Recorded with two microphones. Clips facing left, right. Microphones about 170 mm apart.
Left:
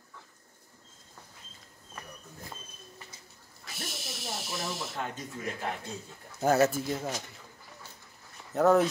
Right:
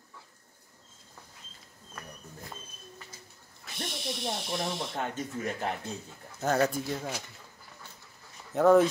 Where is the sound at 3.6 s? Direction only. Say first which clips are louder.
Right 5 dB; 5° left (ahead or behind).